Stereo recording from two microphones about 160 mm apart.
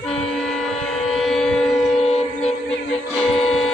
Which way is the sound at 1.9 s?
40° left (ahead or behind).